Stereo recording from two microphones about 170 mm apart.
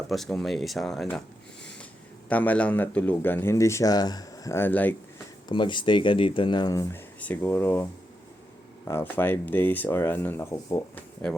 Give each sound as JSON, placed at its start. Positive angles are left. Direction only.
{"t": 0.1, "sound": "speech", "side_deg": 0}
{"t": 2.3, "sound": "a man's voice", "side_deg": 10}
{"t": 5.5, "sound": "a man's voice", "side_deg": 25}